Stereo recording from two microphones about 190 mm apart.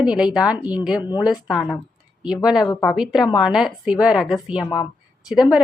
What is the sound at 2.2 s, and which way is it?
A woman's voice, 5° right (ahead or behind).